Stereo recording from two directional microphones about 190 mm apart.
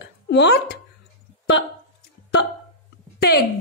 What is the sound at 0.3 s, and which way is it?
Speech, 65° left (ahead or behind).